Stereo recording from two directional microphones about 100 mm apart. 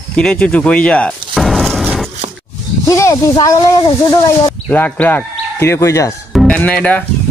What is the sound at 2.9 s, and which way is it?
Speech, 30° left (ahead or behind).